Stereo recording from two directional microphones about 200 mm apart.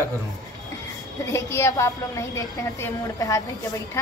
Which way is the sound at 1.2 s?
15° left (ahead or behind).